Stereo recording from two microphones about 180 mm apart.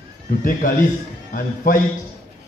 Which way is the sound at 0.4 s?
50° left (ahead or behind).